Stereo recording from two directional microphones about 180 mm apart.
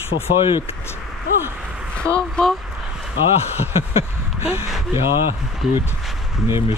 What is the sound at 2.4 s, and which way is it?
Speech, 5° left (ahead or behind).